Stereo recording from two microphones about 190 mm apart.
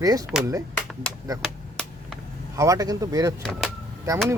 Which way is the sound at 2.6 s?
20° right (ahead or behind).